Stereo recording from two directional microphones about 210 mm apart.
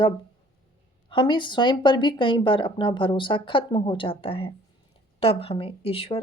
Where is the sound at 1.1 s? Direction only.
25° left (ahead or behind).